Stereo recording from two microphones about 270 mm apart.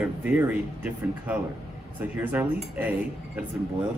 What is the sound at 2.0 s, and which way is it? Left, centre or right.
Cutlery, centre.